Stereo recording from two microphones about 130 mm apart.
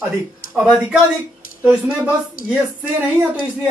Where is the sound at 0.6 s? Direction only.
5° right (ahead or behind).